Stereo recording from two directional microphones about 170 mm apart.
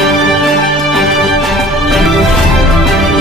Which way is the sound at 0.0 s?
Centre (ahead or behind).